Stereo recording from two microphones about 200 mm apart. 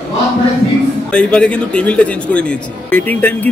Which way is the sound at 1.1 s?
5° left (ahead or behind).